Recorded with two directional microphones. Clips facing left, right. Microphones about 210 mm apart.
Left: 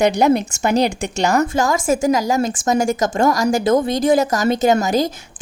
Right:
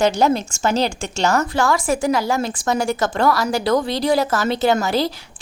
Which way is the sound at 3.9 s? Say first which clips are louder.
Left 3 dB; 45° left (ahead or behind).